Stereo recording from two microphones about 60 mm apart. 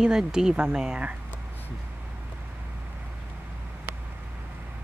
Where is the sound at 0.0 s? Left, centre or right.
Centre.